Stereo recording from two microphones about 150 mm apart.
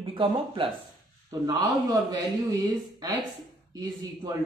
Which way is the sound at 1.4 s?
25° right (ahead or behind).